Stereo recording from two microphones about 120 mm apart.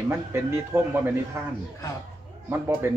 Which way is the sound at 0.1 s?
20° right (ahead or behind).